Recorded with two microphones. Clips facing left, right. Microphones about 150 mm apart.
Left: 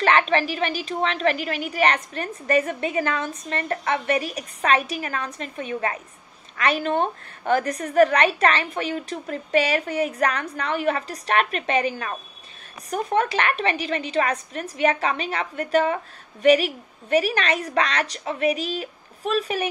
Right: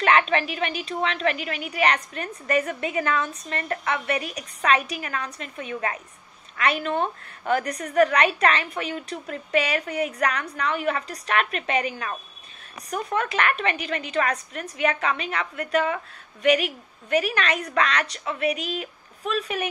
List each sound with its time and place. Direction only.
0.3 s a woman's voice: 35° left (ahead or behind)